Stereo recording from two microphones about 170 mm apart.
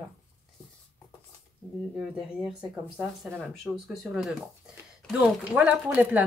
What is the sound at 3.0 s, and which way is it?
Speech, 5° left (ahead or behind).